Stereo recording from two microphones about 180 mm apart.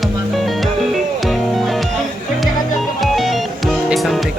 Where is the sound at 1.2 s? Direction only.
Centre (ahead or behind).